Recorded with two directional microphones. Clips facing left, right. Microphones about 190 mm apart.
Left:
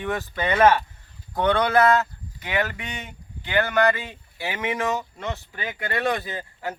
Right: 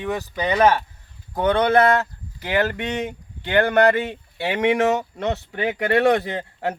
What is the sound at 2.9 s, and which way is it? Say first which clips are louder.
Speech: right 11 dB; 60° right (ahead or behind).